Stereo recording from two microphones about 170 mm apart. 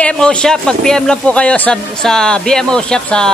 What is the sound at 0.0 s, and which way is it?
Speech, 5° left (ahead or behind).